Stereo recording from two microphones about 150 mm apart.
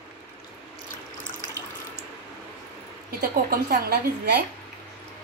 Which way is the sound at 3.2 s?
90° right.